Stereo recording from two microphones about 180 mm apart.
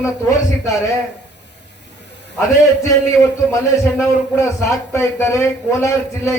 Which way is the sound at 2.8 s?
15° left (ahead or behind).